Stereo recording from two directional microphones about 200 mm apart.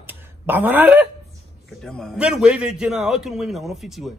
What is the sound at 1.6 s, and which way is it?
Speech, 5° left (ahead or behind).